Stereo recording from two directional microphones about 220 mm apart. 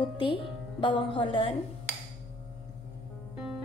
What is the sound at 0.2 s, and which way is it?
A woman's voice, 20° left (ahead or behind).